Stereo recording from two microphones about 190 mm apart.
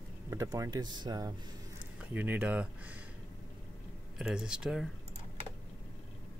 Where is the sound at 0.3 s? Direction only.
15° right (ahead or behind).